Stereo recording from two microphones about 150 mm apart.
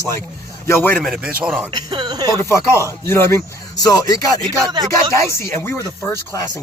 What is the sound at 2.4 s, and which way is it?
A man's voice, 20° left (ahead or behind).